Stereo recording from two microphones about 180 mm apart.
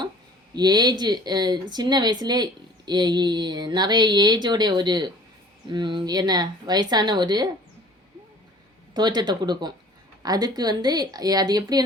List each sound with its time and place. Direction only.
0.5 s speech: 25° right (ahead or behind)
8.9 s speech: 25° right (ahead or behind)